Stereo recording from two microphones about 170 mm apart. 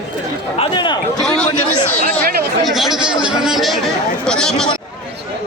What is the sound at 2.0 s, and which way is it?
Chatter, 60° right (ahead or behind).